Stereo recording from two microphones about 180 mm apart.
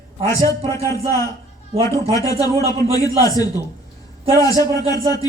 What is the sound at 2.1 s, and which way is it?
A man's voice, 20° left (ahead or behind).